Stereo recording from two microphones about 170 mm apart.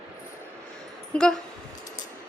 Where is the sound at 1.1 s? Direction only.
5° left (ahead or behind).